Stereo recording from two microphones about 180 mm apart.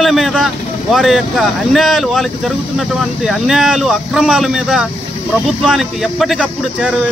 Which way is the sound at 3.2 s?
Centre (ahead or behind).